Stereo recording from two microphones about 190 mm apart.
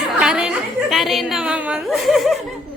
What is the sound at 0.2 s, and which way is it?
A woman's voice, 5° right (ahead or behind).